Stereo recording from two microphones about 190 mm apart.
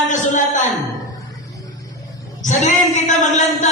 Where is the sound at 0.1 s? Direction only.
40° left (ahead or behind).